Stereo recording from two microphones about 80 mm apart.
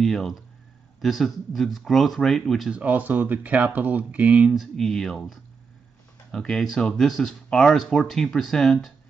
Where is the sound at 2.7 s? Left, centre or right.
Right.